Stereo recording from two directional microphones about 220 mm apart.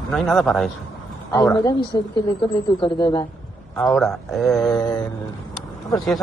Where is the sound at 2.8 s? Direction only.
20° left (ahead or behind).